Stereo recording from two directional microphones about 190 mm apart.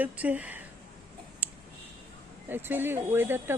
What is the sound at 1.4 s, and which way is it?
Clicking, 10° right (ahead or behind).